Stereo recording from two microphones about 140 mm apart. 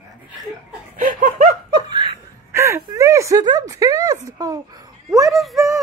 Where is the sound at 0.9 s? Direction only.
65° right (ahead or behind).